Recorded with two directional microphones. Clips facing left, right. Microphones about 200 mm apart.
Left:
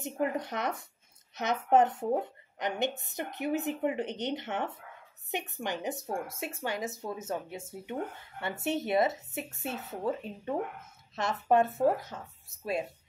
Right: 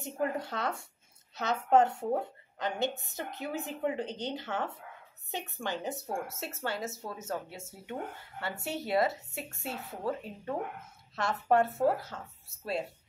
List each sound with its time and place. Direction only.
0.0 s speech: 20° left (ahead or behind)